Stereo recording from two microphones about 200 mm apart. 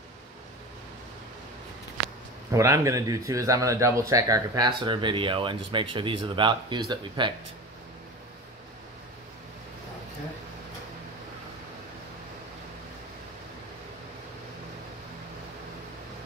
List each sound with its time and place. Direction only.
2.5 s speech: 15° right (ahead or behind)